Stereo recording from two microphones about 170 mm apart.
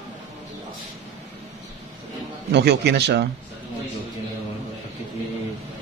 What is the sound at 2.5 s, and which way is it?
Speech, 75° right (ahead or behind).